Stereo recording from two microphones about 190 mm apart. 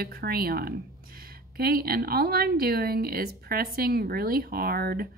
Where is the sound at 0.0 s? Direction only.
55° right (ahead or behind).